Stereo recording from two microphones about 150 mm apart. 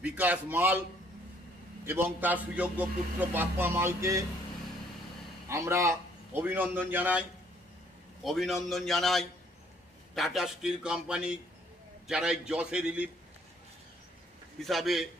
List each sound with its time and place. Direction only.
0.0 s a man's voice: 10° right (ahead or behind)
1.9 s a man's voice: 15° right (ahead or behind)
5.5 s a man's voice: 20° right (ahead or behind)
8.2 s a man's voice: centre (ahead or behind)
14.6 s a man's voice: centre (ahead or behind)